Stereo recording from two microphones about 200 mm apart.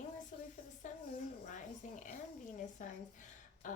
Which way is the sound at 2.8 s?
40° left (ahead or behind).